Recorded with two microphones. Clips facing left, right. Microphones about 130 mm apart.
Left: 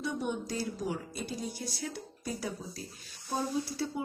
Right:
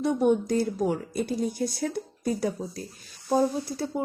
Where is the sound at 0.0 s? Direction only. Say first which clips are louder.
Right 11 dB; 50° right (ahead or behind).